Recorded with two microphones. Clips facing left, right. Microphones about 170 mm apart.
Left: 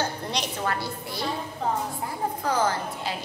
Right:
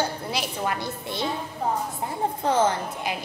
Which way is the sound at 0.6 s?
20° right (ahead or behind).